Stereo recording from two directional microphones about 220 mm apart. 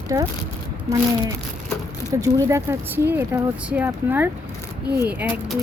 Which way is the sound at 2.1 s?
15° right (ahead or behind).